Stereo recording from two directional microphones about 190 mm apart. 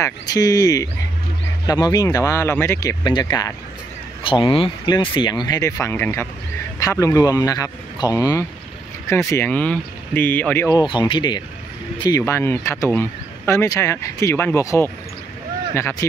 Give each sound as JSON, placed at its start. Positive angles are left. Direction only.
{"t": 0.0, "sound": "speech", "side_deg": 20}
{"t": 10.8, "sound": "speech", "side_deg": 25}
{"t": 16.0, "sound": "speech", "side_deg": 15}